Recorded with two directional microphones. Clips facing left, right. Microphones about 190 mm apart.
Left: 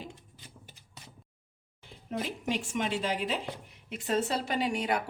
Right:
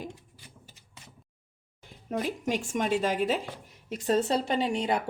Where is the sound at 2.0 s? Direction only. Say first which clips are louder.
Right 3 dB; 45° right (ahead or behind).